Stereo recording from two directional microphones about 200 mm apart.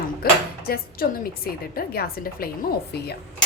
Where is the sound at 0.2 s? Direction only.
50° left (ahead or behind).